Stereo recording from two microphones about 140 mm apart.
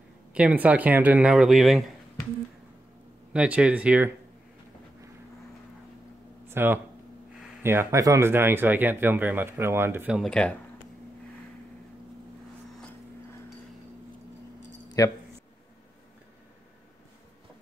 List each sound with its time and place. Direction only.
0.3 s speech: 10° right (ahead or behind)
3.3 s speech: 10° right (ahead or behind)
6.4 s a sound: 15° right (ahead or behind)
7.6 s speech: 15° right (ahead or behind)
10.1 s speech: 5° left (ahead or behind)
15.0 s speech: 25° left (ahead or behind)